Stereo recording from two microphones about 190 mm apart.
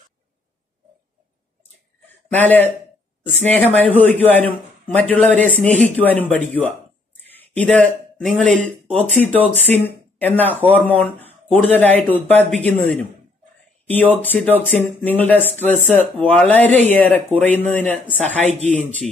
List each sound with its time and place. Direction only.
2.2 s a man's voice: 10° left (ahead or behind)
18.4 s speech: 35° right (ahead or behind)
18.7 s a man's voice: 5° left (ahead or behind)